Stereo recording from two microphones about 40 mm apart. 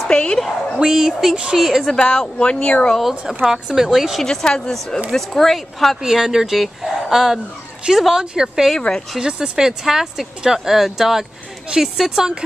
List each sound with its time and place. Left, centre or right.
0.1 s speech: left
0.7 s speech: centre
1.3 s speech: right
1.6 s speech: centre
2.0 s speech: left
3.0 s speech: centre
4.2 s speech: centre
5.1 s speech: centre
6.0 s speech: centre
8.7 s speech: centre
9.2 s speech: centre